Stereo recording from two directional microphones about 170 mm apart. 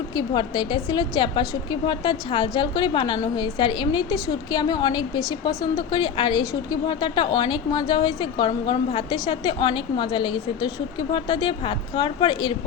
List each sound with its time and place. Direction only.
0.2 s a woman's voice: 25° left (ahead or behind)